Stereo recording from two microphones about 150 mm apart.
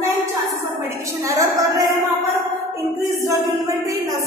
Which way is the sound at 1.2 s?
20° right (ahead or behind).